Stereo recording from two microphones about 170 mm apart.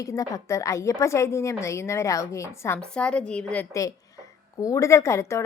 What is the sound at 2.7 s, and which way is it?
A woman's voice, 5° left (ahead or behind).